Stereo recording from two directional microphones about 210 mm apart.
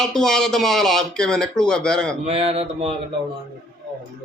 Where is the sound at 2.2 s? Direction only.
30° right (ahead or behind).